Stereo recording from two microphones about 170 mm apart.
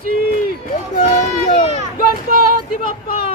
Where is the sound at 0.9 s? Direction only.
45° left (ahead or behind).